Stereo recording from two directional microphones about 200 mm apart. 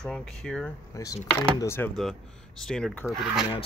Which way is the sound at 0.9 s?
15° left (ahead or behind).